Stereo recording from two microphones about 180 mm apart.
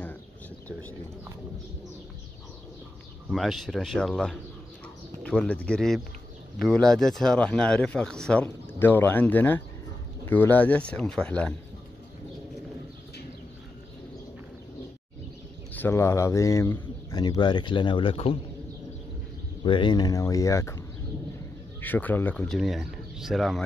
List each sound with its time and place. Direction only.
3.3 s speech: centre (ahead or behind)
15.7 s a man's voice: 15° left (ahead or behind); by 18.4 s 30° left (ahead or behind)
19.6 s a man's voice: 25° left (ahead or behind)
21.8 s speech: 10° left (ahead or behind)